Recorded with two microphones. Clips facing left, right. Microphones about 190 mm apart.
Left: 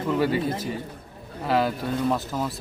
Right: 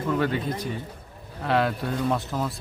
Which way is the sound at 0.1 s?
5° left (ahead or behind).